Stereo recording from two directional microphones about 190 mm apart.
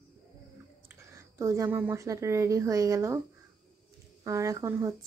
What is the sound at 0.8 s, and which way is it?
Speech, 15° right (ahead or behind).